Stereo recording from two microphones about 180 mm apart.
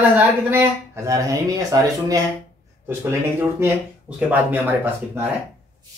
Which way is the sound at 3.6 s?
10° right (ahead or behind).